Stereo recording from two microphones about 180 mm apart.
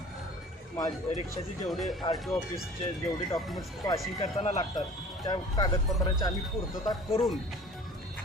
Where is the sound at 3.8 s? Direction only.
20° left (ahead or behind).